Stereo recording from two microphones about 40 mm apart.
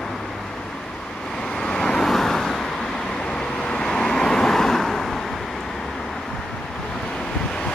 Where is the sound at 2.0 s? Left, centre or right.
Centre.